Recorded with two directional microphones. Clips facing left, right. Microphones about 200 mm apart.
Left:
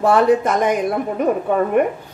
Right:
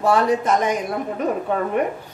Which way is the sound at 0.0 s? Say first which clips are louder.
Left 4 dB; 55° left (ahead or behind).